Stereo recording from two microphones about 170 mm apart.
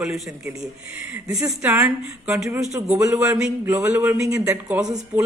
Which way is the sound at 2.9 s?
20° right (ahead or behind).